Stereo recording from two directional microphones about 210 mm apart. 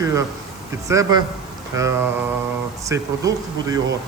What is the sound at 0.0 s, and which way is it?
A man's voice, 15° right (ahead or behind).